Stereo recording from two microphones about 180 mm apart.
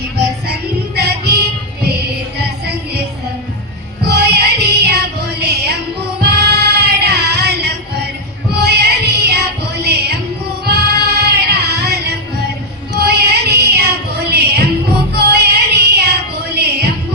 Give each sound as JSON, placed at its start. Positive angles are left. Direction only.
{"t": 0.9, "sound": "music", "side_deg": -65}
{"t": 4.0, "sound": "music", "side_deg": -65}